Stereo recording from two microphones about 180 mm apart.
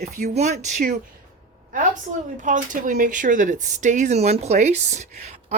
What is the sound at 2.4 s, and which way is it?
Speech, 45° right (ahead or behind).